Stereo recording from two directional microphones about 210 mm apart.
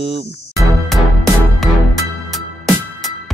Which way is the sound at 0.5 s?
Centre (ahead or behind).